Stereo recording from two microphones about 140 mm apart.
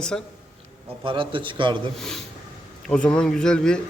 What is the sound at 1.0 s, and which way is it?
Speech, 40° right (ahead or behind).